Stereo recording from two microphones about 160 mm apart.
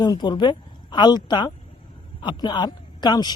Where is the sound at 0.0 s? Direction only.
25° left (ahead or behind).